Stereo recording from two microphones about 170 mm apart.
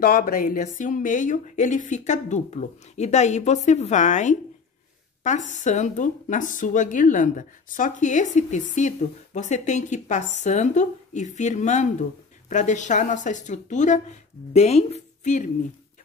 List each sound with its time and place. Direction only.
0.0 s a woman's voice: 60° left (ahead or behind)